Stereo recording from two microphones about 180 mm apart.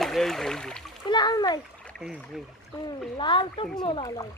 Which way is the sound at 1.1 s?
25° left (ahead or behind).